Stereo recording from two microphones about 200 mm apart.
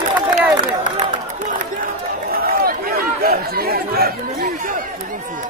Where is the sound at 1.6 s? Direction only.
45° right (ahead or behind).